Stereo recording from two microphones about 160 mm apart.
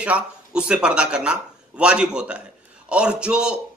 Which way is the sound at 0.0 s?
5° right (ahead or behind).